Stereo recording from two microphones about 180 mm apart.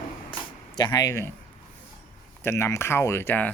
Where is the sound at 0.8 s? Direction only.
15° left (ahead or behind).